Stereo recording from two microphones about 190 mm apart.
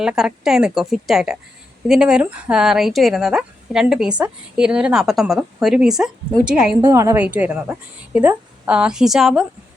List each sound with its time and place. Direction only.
0.0 s speech: 5° right (ahead or behind)